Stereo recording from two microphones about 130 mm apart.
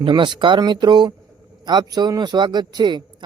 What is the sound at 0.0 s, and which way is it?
A man's voice, 40° right (ahead or behind).